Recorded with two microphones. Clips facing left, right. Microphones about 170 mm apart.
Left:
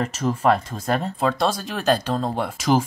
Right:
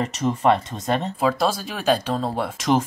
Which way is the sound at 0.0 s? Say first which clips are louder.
Even; centre (ahead or behind).